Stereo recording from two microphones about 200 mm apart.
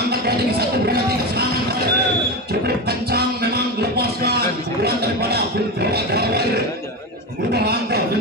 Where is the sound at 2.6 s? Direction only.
50° right (ahead or behind).